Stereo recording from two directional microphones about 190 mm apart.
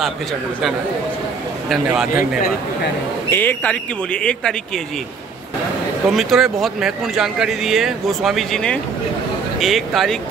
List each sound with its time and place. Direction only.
1.7 s speech: 5° right (ahead or behind)
3.3 s speech: 10° left (ahead or behind)
6.0 s speech: centre (ahead or behind)